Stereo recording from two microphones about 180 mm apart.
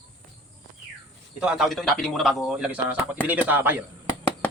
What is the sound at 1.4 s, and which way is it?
A man's voice, 5° right (ahead or behind).